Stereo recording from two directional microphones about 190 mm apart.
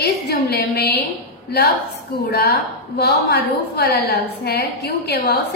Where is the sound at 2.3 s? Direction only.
55° left (ahead or behind).